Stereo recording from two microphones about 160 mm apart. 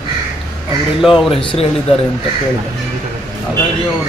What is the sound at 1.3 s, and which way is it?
Speech, 35° left (ahead or behind).